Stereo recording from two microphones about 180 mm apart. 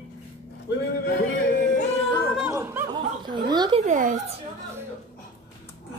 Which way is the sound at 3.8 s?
45° right (ahead or behind).